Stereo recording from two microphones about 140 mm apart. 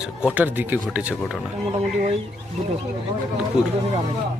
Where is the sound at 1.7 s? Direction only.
50° right (ahead or behind).